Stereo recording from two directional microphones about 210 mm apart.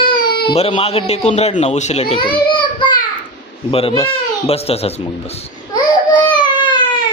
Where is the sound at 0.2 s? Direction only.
45° left (ahead or behind).